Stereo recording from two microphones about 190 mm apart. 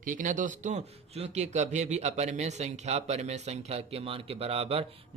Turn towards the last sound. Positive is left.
turn(degrees=-30)  # may be behind; listen again after turning